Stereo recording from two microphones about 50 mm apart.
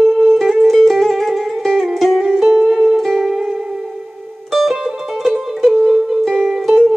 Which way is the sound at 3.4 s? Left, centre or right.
Centre.